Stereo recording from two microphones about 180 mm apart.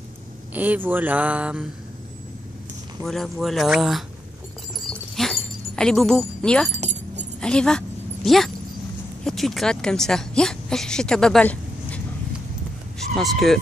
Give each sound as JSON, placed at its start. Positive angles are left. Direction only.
{"t": 0.6, "sound": "speech", "side_deg": -10}
{"t": 3.1, "sound": "speech", "side_deg": 0}
{"t": 4.8, "sound": "keys jangling", "side_deg": 0}
{"t": 6.8, "sound": "keys jangling", "side_deg": -40}
{"t": 7.3, "sound": "a sound", "side_deg": 5}
{"t": 9.2, "sound": "speech", "side_deg": 0}
{"t": 13.1, "sound": "speech", "side_deg": 0}